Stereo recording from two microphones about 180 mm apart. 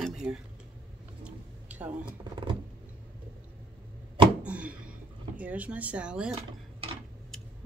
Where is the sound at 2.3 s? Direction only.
25° right (ahead or behind).